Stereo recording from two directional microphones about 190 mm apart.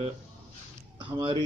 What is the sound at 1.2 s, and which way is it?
Speech, 25° right (ahead or behind).